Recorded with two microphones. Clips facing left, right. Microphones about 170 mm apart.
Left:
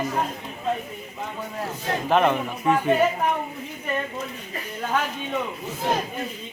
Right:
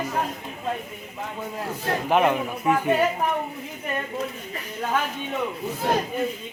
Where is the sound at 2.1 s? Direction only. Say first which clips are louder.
Left 1 dB; 10° right (ahead or behind).